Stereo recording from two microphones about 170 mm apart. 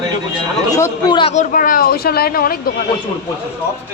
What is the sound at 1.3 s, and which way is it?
Speech, 50° left (ahead or behind).